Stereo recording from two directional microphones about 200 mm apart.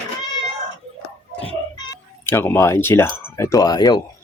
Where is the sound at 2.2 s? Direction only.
10° left (ahead or behind).